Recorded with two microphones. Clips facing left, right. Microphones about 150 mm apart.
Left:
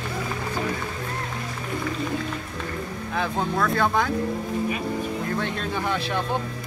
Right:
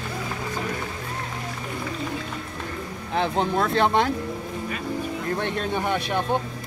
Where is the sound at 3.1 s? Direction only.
25° right (ahead or behind).